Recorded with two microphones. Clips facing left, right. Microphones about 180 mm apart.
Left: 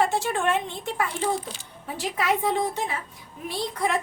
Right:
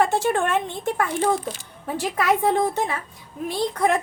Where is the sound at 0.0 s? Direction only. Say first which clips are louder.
Right 3 dB; 50° right (ahead or behind).